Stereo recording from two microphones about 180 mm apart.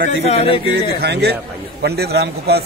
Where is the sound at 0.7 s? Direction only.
65° right (ahead or behind).